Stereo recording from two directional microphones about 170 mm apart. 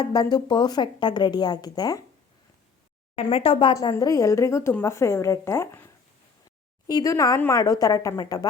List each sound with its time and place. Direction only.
0.0 s speech: 25° left (ahead or behind)
3.2 s speech: 35° left (ahead or behind)